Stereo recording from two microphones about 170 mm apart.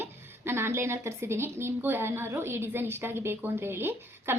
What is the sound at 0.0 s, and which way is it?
A woman's voice, 15° right (ahead or behind).